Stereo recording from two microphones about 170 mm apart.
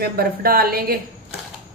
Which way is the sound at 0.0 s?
65° right (ahead or behind).